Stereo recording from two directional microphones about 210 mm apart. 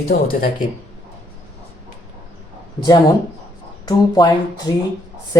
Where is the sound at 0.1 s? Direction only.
40° left (ahead or behind).